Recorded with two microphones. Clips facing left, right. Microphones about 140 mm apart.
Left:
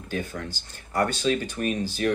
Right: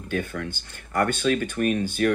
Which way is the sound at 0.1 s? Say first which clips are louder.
Right 3 dB; 55° right (ahead or behind).